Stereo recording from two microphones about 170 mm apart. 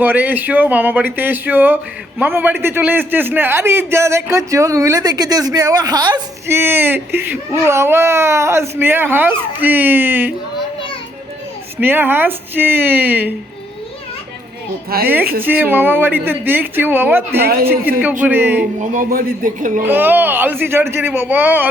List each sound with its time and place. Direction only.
0.0 s speech: 10° right (ahead or behind)
6.5 s speech: 10° right (ahead or behind)
11.8 s speech: 10° right (ahead or behind)
15.0 s speech: 10° right (ahead or behind)
17.4 s a woman's voice: 65° right (ahead or behind)
18.2 s speech: 10° right (ahead or behind)
18.8 s a man's voice: 55° right (ahead or behind)
19.8 s speech: 10° right (ahead or behind)